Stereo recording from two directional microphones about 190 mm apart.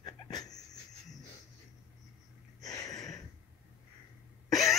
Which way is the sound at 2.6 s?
20° left (ahead or behind).